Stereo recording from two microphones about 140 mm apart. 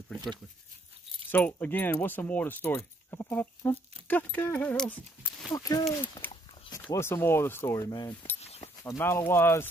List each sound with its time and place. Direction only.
1.3 s speech: 10° left (ahead or behind)
5.5 s speech: 25° left (ahead or behind)
6.2 s a sound: 15° left (ahead or behind)
6.7 s speech: 20° left (ahead or behind)
8.4 s a sound: 45° left (ahead or behind)
8.8 s speech: 20° left (ahead or behind)